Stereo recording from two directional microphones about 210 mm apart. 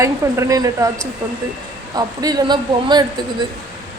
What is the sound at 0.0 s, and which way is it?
Speech, 15° right (ahead or behind).